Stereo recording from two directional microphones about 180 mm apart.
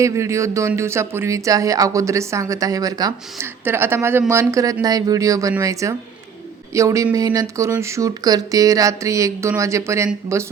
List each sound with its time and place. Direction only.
0.0 s speech: 15° right (ahead or behind)